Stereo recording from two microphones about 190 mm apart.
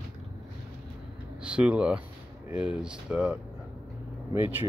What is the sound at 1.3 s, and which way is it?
Speech, 5° right (ahead or behind).